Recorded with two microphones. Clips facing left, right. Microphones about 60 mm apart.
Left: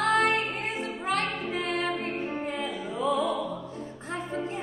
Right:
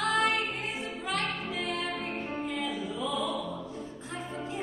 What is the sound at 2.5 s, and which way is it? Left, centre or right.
Music, left.